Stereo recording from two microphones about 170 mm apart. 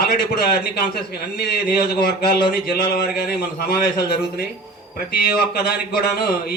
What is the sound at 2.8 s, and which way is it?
Speech, 65° left (ahead or behind).